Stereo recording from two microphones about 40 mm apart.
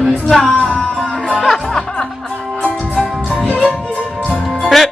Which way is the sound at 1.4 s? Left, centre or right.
Centre.